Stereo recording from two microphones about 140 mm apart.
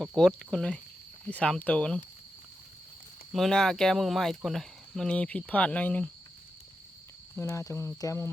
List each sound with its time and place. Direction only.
0.2 s speech: centre (ahead or behind)
3.3 s speech: centre (ahead or behind)
7.3 s speech: 20° left (ahead or behind)